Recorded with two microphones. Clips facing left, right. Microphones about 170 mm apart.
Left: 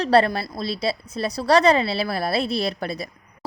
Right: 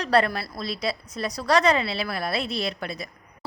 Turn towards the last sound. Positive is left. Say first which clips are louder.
# left 4 dB
turn(degrees=35)  # may be behind; listen again after turning